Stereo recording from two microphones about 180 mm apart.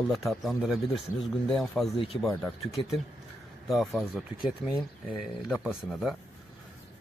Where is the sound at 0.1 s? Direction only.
Centre (ahead or behind).